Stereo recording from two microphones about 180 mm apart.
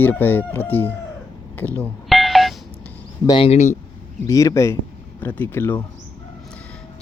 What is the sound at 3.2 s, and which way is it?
Speech, 25° left (ahead or behind).